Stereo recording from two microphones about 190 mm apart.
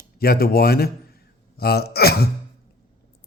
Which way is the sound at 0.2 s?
55° left (ahead or behind).